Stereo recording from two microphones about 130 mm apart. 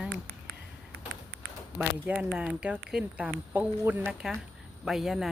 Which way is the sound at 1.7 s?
10° right (ahead or behind).